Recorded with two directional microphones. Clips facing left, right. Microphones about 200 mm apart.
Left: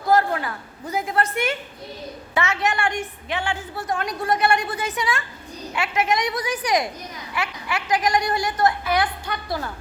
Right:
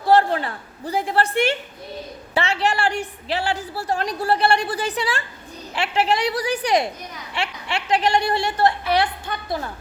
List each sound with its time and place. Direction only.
0.0 s a man's voice: 30° right (ahead or behind)